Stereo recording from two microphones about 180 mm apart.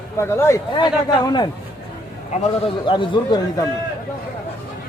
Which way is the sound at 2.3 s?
40° left (ahead or behind).